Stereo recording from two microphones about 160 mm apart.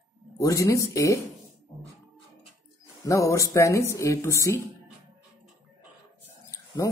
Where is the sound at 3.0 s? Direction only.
20° left (ahead or behind).